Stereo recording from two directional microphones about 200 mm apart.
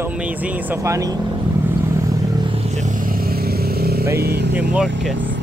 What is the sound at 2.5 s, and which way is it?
Vehicle, 35° right (ahead or behind).